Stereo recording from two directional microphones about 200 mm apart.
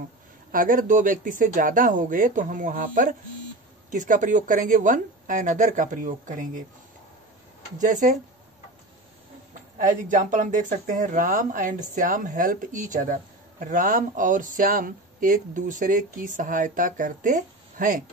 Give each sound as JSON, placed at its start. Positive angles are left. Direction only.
{"t": 0.5, "sound": "speech", "side_deg": -45}
{"t": 7.8, "sound": "speech", "side_deg": -40}
{"t": 9.5, "sound": "speech", "side_deg": -40}